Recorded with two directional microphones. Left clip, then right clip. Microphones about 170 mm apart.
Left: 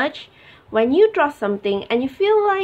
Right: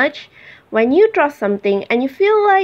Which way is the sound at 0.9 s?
20° right (ahead or behind).